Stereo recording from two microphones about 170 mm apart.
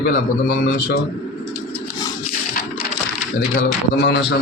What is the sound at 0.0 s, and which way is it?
Speech, 60° left (ahead or behind).